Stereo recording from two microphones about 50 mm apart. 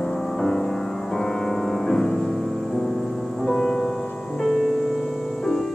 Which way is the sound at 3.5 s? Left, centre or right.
Centre.